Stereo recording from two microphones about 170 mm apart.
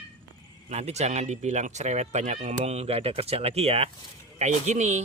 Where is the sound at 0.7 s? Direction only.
40° right (ahead or behind).